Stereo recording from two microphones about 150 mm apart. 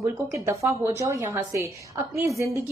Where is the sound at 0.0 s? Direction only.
20° right (ahead or behind).